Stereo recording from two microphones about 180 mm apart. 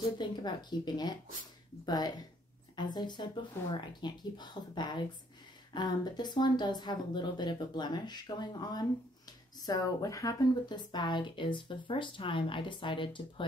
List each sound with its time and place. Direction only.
0.2 s speech: 25° left (ahead or behind)